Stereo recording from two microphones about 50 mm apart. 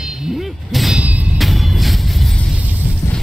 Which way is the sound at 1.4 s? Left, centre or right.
Centre.